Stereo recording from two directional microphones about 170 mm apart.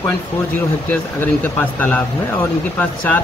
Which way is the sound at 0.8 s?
10° left (ahead or behind).